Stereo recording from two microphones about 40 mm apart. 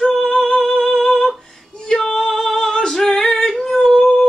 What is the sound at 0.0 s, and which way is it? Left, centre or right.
Music, centre.